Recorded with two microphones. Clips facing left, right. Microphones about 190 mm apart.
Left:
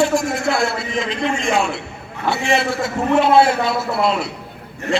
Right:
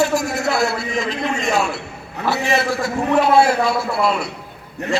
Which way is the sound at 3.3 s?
25° left (ahead or behind).